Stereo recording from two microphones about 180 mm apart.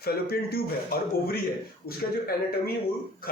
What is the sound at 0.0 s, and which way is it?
A man's voice, 60° left (ahead or behind).